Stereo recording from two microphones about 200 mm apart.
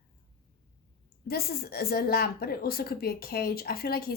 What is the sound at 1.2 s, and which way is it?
A woman's voice, 50° left (ahead or behind).